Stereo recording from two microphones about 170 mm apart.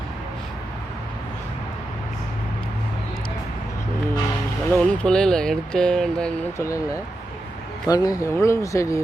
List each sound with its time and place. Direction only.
4.7 s speech: 5° left (ahead or behind)
6.6 s speech: 20° left (ahead or behind)
7.9 s speech: 20° left (ahead or behind)